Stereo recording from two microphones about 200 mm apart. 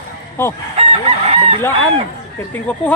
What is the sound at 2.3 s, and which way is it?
Speech, 10° left (ahead or behind).